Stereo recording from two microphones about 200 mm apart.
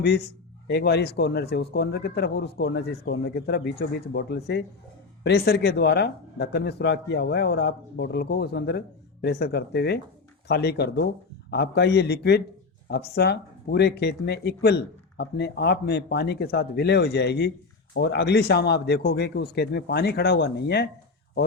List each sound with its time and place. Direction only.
0.7 s speech: 55° left (ahead or behind)